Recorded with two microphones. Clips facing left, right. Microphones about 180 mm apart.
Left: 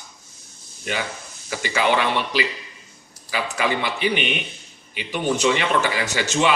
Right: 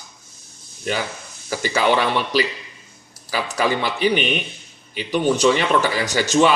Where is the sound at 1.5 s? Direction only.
40° right (ahead or behind).